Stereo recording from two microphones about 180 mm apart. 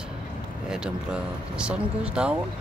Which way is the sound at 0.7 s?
5° right (ahead or behind).